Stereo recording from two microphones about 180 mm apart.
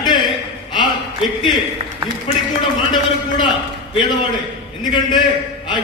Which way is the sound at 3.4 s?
25° left (ahead or behind).